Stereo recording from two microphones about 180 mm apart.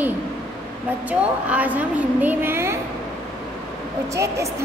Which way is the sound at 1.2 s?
10° right (ahead or behind).